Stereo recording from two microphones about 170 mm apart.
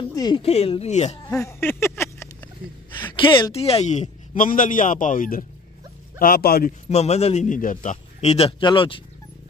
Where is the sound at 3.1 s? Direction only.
30° left (ahead or behind); by 6.7 s 60° left (ahead or behind).